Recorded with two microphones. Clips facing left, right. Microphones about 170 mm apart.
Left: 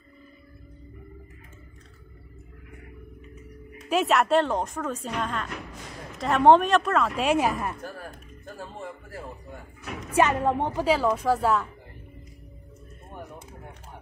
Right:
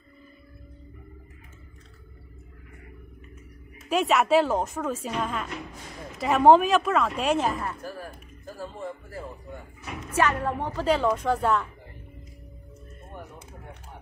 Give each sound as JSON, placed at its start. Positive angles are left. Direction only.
{"t": 3.7, "sound": "speech", "side_deg": 0}
{"t": 10.1, "sound": "a woman's voice", "side_deg": 20}
{"t": 10.9, "sound": "speech", "side_deg": 5}